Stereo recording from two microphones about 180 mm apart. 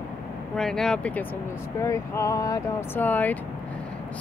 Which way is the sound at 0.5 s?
5° left (ahead or behind).